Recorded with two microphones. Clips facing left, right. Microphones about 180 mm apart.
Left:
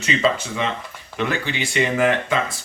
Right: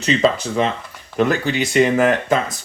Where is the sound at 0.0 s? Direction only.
35° right (ahead or behind).